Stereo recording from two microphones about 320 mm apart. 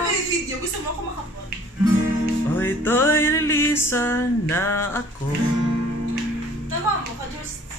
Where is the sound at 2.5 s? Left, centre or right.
Centre.